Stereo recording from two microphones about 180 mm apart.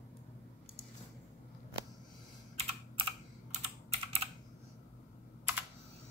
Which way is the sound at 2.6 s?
30° right (ahead or behind).